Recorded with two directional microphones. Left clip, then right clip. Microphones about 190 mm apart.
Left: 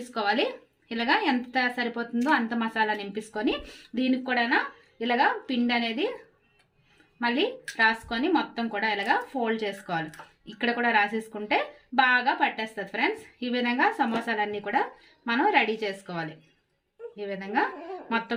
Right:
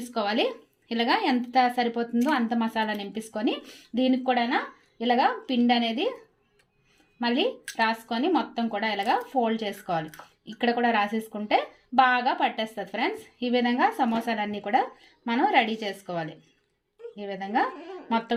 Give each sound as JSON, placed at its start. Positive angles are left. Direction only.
{"t": 0.1, "sound": "speech", "side_deg": -30}
{"t": 7.2, "sound": "speech", "side_deg": -30}